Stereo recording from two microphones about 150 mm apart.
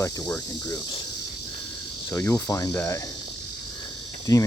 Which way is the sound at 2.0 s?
25° left (ahead or behind).